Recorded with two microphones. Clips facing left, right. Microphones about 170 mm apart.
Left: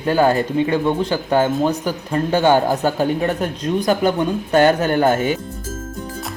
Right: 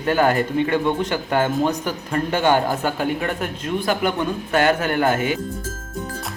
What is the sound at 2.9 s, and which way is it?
A man's voice, 40° left (ahead or behind).